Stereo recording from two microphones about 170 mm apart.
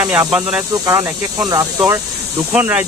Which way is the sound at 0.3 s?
5° right (ahead or behind).